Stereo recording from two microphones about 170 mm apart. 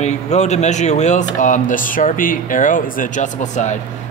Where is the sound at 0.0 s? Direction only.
40° left (ahead or behind).